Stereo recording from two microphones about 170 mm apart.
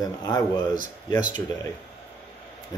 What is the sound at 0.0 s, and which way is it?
Speech, 20° left (ahead or behind).